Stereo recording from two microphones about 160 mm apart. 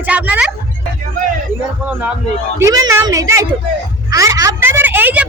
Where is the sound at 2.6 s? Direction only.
20° right (ahead or behind).